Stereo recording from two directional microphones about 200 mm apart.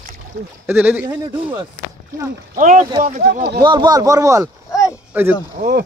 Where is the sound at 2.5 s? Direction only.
40° right (ahead or behind).